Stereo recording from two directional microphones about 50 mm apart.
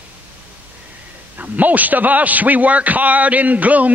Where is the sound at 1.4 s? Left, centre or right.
Right.